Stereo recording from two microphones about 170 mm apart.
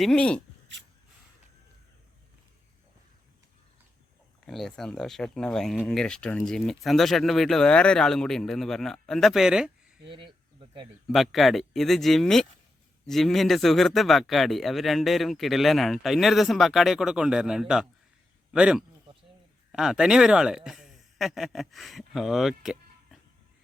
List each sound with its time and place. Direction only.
0.0 s speech: 5° left (ahead or behind)
4.4 s speech: centre (ahead or behind)
10.1 s speech: 30° right (ahead or behind)
11.1 s speech: centre (ahead or behind)